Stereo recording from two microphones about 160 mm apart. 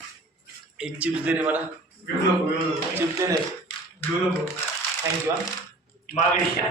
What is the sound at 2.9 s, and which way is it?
Speech, 15° right (ahead or behind).